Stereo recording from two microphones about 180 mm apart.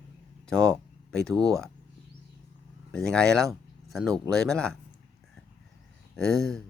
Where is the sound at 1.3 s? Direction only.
20° right (ahead or behind).